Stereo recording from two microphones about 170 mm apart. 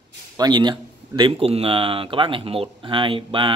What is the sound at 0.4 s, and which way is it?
Speech, 25° right (ahead or behind).